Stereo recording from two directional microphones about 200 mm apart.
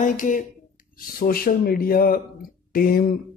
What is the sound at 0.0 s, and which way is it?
A man's voice, 40° left (ahead or behind).